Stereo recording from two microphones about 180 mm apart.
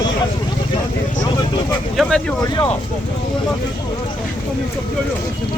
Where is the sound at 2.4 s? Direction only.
25° left (ahead or behind).